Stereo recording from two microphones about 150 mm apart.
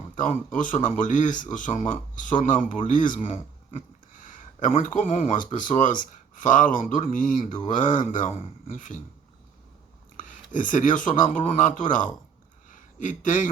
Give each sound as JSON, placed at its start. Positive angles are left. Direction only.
{"t": 0.2, "sound": "speech", "side_deg": 60}
{"t": 10.2, "sound": "speech", "side_deg": 60}
{"t": 12.6, "sound": "a sound", "side_deg": 60}